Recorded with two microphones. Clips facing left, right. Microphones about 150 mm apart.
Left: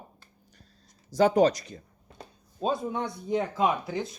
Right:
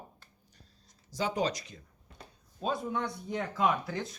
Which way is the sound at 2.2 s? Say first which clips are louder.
Left 5 dB; 25° left (ahead or behind).